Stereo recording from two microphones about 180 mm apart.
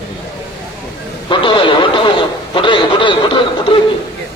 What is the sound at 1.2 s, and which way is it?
Radio, 25° left (ahead or behind).